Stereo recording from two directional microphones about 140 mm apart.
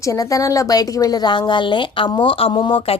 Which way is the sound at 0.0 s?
25° left (ahead or behind).